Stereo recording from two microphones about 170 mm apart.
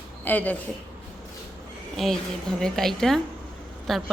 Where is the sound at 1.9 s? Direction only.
Centre (ahead or behind).